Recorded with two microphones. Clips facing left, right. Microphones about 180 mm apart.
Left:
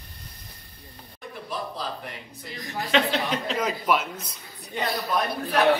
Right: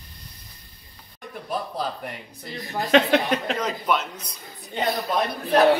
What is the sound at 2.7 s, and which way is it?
Speech, 50° right (ahead or behind).